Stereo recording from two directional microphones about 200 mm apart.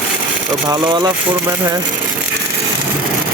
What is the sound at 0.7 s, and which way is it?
Speech, 20° right (ahead or behind).